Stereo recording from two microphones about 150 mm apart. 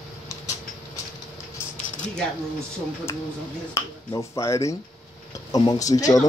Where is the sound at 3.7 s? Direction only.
20° left (ahead or behind).